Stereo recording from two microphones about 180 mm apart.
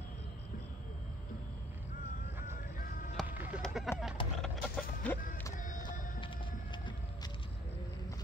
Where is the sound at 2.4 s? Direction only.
50° left (ahead or behind).